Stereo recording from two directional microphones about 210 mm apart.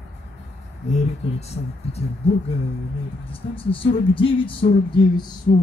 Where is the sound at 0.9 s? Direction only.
30° left (ahead or behind).